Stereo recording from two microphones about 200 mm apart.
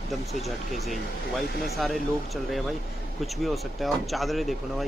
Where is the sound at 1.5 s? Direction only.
50° left (ahead or behind).